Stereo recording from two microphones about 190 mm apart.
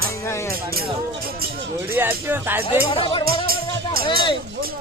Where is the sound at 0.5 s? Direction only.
50° right (ahead or behind).